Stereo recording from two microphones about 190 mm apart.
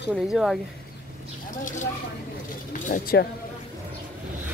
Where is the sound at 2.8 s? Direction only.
50° left (ahead or behind).